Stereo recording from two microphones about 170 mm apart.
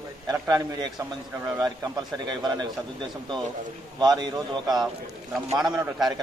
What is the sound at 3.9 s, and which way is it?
Speech, 25° right (ahead or behind).